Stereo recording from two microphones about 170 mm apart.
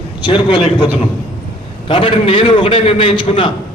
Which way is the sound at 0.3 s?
30° left (ahead or behind).